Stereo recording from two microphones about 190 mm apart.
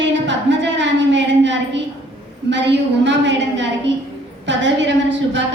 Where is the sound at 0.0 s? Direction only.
70° right (ahead or behind).